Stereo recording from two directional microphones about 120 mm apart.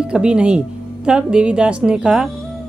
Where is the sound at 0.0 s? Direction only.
10° right (ahead or behind).